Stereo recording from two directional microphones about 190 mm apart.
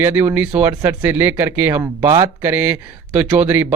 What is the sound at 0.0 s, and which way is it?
Speech, 10° right (ahead or behind).